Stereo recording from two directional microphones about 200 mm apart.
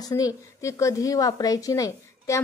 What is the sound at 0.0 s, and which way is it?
A woman's voice, 15° left (ahead or behind).